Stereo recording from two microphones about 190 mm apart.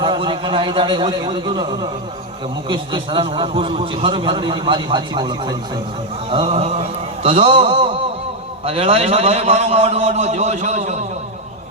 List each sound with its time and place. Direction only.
0.0 s a man's voice: 25° right (ahead or behind)
6.3 s mantra: 30° right (ahead or behind)
7.4 s a man's voice: 25° right (ahead or behind)